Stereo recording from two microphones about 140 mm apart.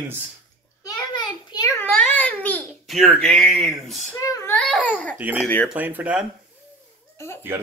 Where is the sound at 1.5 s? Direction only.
25° left (ahead or behind).